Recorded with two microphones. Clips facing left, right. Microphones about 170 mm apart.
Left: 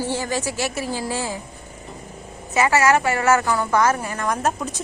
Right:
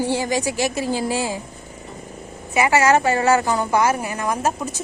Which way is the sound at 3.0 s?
35° right (ahead or behind).